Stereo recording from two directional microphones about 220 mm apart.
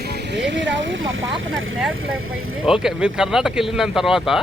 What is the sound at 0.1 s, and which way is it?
Speech, 50° right (ahead or behind).